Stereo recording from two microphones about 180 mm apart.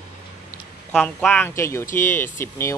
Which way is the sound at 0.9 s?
5° left (ahead or behind).